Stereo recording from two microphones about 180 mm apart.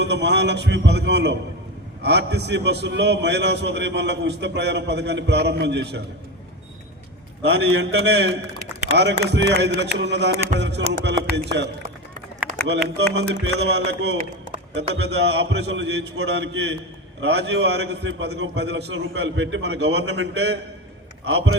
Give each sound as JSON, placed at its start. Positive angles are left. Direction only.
{"t": 0.0, "sound": "a man's voice", "side_deg": -70}
{"t": 7.4, "sound": "a man's voice", "side_deg": -70}